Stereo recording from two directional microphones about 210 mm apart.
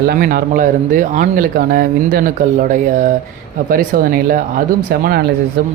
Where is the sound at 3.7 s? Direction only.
45° right (ahead or behind).